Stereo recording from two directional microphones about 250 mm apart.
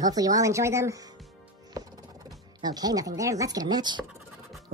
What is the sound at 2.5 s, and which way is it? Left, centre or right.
Speech, centre.